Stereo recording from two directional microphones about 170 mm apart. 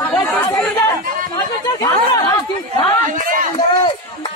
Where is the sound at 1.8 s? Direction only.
20° left (ahead or behind).